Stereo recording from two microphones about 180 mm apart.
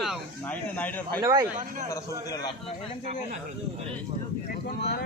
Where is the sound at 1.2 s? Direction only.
20° right (ahead or behind).